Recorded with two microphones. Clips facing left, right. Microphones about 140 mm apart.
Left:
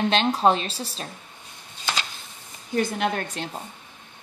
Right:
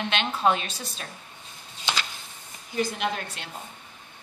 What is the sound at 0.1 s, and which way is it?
Speech, 35° left (ahead or behind).